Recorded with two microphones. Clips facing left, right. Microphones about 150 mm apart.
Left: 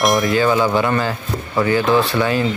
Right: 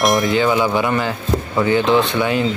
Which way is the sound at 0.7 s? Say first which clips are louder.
Left 1 dB; 15° right (ahead or behind).